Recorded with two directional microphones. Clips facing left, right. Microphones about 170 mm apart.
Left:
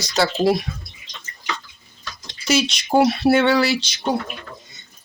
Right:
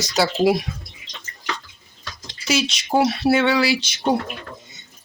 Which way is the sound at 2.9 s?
Centre (ahead or behind).